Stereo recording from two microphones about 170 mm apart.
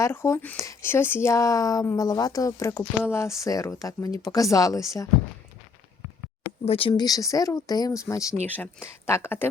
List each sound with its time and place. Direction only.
0.0 s speech: 15° left (ahead or behind)
6.7 s speech: 30° left (ahead or behind); by 9.5 s 15° left (ahead or behind)